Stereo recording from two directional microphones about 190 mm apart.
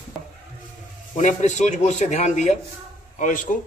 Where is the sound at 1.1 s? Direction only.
40° left (ahead or behind).